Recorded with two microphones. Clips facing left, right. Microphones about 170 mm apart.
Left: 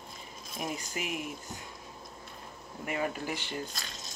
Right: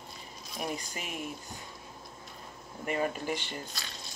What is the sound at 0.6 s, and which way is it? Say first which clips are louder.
Speech: even; 5° left (ahead or behind).